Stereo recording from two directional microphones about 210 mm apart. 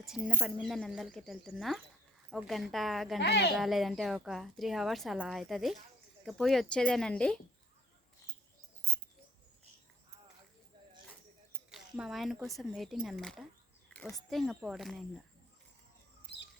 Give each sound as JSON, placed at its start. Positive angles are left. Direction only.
{"t": 0.0, "sound": "a woman's voice", "side_deg": -5}
{"t": 3.2, "sound": "speech", "side_deg": 55}
{"t": 3.5, "sound": "a woman's voice", "side_deg": 0}
{"t": 11.7, "sound": "a woman's voice", "side_deg": 0}
{"t": 16.2, "sound": "rodents", "side_deg": 55}